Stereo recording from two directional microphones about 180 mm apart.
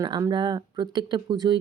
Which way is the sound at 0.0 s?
25° right (ahead or behind).